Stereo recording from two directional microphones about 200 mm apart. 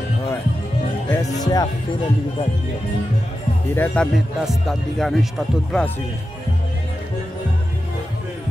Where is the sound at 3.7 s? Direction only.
10° left (ahead or behind).